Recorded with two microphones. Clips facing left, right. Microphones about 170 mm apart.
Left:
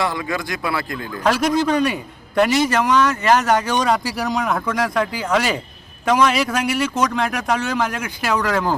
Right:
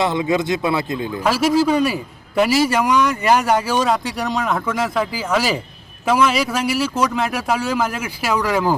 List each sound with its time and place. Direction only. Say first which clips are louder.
0.0 s speech: right 5 dB; 20° right (ahead or behind)
1.2 s a man's voice: right 1 dB; 5° right (ahead or behind)